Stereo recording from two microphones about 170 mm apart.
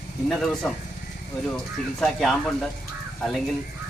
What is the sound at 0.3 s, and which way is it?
Speech, centre (ahead or behind).